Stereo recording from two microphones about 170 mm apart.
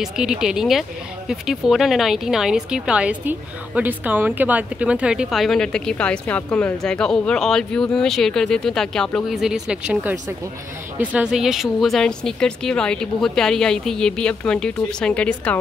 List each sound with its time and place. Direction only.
0.0 s speech: 5° right (ahead or behind)